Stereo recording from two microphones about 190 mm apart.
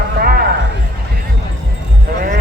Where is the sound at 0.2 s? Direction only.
55° right (ahead or behind).